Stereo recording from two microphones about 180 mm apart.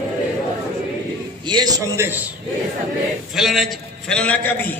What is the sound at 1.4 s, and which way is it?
Speech, 25° right (ahead or behind).